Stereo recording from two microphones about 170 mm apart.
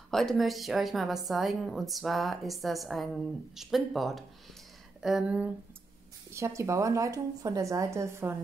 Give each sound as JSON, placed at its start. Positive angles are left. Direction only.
{"t": 0.1, "sound": "a woman's voice", "side_deg": 0}
{"t": 6.3, "sound": "a woman's voice", "side_deg": -15}